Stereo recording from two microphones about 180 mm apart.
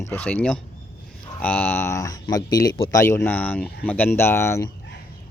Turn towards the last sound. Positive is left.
turn(degrees=15)  # may be behind; listen again after turning